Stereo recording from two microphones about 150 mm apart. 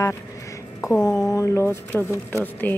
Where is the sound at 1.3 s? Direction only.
20° left (ahead or behind).